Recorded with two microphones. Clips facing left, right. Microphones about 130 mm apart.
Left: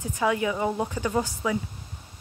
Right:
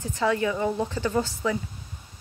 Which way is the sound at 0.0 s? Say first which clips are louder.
Right 1 dB; 15° left (ahead or behind).